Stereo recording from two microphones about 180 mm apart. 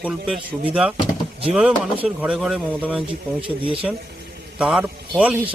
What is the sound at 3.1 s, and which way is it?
Speech, 30° right (ahead or behind).